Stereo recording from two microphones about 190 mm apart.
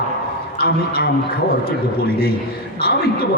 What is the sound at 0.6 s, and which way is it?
A man's voice, 55° left (ahead or behind).